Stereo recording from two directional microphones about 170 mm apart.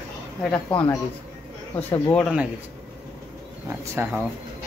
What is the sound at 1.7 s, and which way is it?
Speech, 10° left (ahead or behind).